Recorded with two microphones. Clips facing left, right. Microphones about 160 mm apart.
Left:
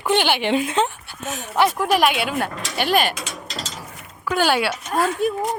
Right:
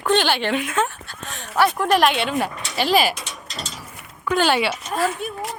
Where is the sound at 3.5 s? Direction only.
90° left.